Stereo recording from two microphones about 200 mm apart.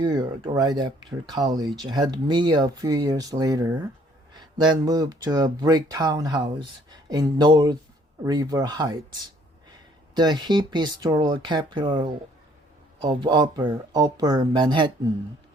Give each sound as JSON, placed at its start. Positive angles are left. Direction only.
{"t": 0.0, "sound": "speech", "side_deg": -20}
{"t": 10.2, "sound": "speech", "side_deg": -20}